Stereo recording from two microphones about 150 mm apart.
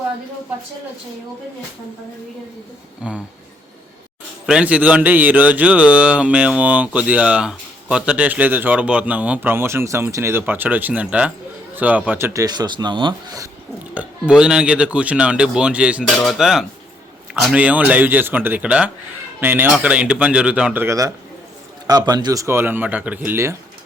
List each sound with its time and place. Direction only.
4.4 s speech: 5° right (ahead or behind); by 13.5 s 25° right (ahead or behind)
13.9 s speech: 10° right (ahead or behind)
20.8 s speech: 20° right (ahead or behind)